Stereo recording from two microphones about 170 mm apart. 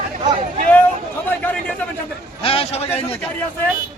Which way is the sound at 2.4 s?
35° left (ahead or behind).